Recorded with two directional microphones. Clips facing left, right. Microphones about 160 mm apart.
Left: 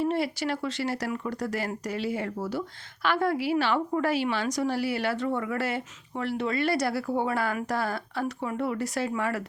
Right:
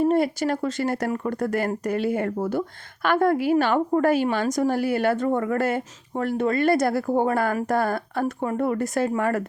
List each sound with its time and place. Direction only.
0.0 s speech: 45° right (ahead or behind)